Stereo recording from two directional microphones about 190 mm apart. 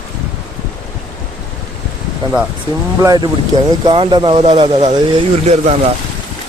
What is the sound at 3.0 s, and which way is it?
Speech, 20° right (ahead or behind).